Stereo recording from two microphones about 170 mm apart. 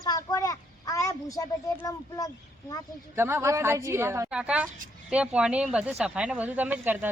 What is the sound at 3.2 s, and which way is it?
Speech, 15° right (ahead or behind).